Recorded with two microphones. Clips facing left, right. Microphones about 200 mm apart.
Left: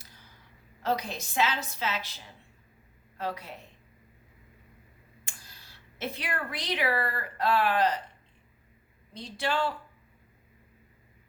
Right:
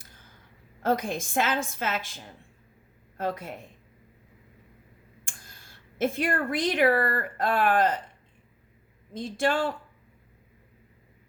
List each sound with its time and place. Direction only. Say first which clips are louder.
0.0 s a sound: right 1 dB; 50° right (ahead or behind)
0.8 s a woman's voice: right 4 dB; 50° right (ahead or behind)
5.2 s speech: right 2 dB; 50° right (ahead or behind)
9.1 s a woman's voice: right 5 dB; 50° right (ahead or behind)